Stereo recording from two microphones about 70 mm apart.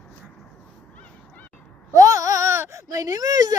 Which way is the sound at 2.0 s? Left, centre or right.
Right.